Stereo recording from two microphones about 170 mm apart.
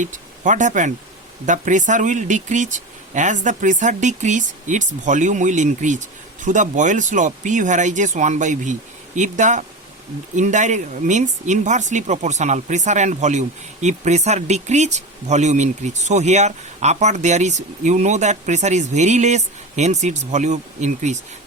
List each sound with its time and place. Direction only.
0.0 s speech: 45° right (ahead or behind)